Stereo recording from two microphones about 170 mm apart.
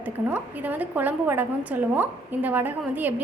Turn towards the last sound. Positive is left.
turn(degrees=-10)  # may be behind; listen again after turning